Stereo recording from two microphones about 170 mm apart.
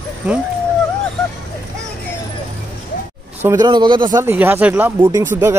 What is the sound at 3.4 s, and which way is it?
Speech, 15° right (ahead or behind).